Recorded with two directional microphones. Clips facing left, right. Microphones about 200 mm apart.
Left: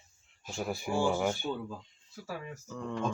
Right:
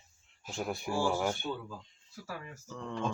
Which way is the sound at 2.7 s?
Centre (ahead or behind).